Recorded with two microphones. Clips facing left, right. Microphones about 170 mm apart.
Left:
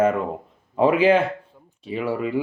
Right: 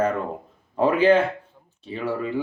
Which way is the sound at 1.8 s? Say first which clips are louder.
Left 2 dB; 10° left (ahead or behind).